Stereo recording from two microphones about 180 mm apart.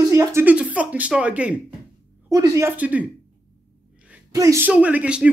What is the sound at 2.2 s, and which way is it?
Speech, 15° right (ahead or behind).